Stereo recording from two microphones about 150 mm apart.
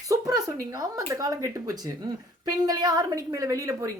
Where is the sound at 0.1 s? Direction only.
25° right (ahead or behind).